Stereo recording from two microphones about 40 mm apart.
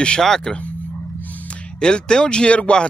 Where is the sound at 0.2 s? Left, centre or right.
Centre.